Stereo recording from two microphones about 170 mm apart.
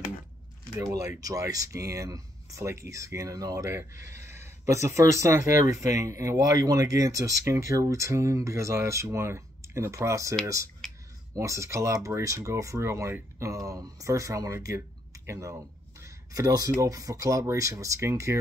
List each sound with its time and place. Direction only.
0.7 s speech: 20° right (ahead or behind)